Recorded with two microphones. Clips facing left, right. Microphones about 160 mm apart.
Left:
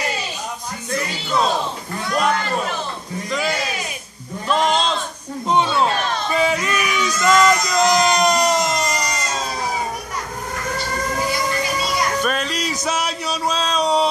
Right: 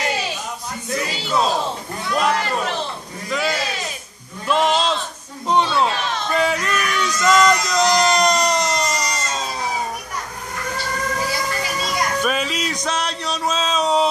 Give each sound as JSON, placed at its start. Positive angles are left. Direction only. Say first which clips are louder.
{"t": 2.1, "sound": "speech", "louder": "even", "side_deg": 0}
{"t": 4.5, "sound": "sheep", "louder": "right 1 dB", "side_deg": -5}
{"t": 5.5, "sound": "a sound", "louder": "even", "side_deg": 0}
{"t": 12.2, "sound": "music", "louder": "even", "side_deg": -5}